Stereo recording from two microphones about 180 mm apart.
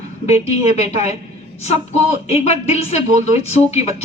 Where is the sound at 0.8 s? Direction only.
40° left (ahead or behind).